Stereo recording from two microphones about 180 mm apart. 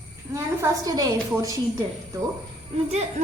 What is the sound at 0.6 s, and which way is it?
A woman's voice, 20° right (ahead or behind).